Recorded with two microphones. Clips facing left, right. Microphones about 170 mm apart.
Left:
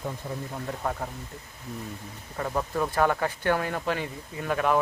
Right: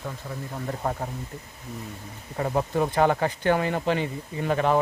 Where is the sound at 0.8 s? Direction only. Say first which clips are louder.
Right 2 dB; 15° right (ahead or behind).